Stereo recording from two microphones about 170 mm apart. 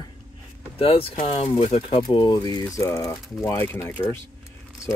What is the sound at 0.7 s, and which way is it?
Speech, 35° left (ahead or behind).